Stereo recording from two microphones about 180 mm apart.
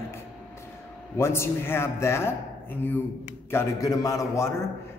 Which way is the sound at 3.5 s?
15° left (ahead or behind).